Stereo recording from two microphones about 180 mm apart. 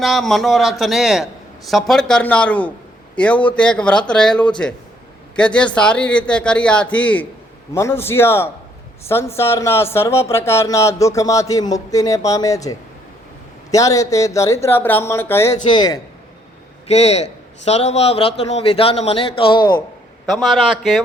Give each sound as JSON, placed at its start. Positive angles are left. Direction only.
{"t": 0.0, "sound": "a man's voice", "side_deg": 0}
{"t": 16.9, "sound": "a man's voice", "side_deg": 35}
{"t": 20.2, "sound": "speech", "side_deg": 0}